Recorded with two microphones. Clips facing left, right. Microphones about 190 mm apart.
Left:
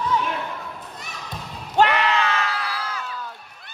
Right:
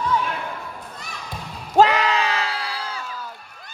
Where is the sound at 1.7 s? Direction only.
35° right (ahead or behind).